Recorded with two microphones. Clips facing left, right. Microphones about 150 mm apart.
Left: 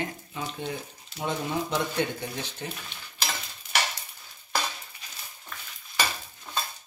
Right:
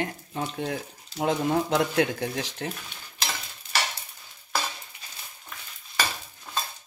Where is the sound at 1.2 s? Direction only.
90° right.